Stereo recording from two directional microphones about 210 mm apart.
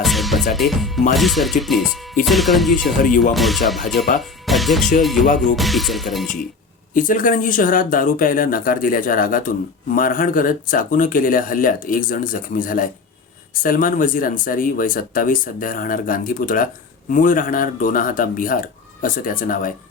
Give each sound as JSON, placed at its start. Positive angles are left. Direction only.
{"t": 0.0, "sound": "speech", "side_deg": 0}
{"t": 3.0, "sound": "speech", "side_deg": 40}
{"t": 3.3, "sound": "speech", "side_deg": 0}
{"t": 6.9, "sound": "speech", "side_deg": 40}